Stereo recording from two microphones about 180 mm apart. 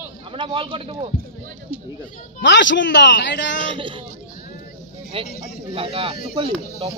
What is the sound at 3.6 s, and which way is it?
Speech, 25° right (ahead or behind).